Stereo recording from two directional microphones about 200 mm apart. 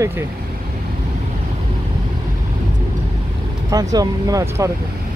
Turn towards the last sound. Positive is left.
turn(degrees=-15)  # may be behind; listen again after turning